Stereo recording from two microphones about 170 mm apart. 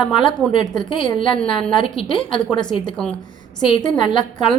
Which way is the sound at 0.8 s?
30° left (ahead or behind).